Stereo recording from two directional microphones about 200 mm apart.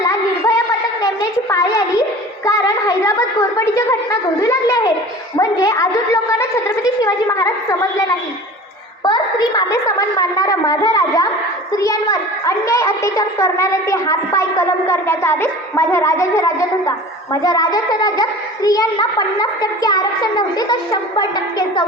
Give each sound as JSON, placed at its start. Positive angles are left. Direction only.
{"t": 0.0, "sound": "child singing", "side_deg": 15}
{"t": 1.0, "sound": "a sound", "side_deg": 15}
{"t": 5.4, "sound": "a child's voice", "side_deg": 15}
{"t": 9.0, "sound": "a woman's voice", "side_deg": 20}